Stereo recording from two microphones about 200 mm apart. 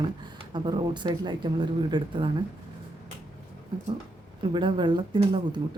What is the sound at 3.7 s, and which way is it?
Speech, 25° right (ahead or behind).